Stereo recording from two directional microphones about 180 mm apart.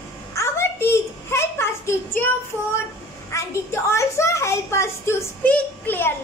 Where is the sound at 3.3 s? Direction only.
15° left (ahead or behind).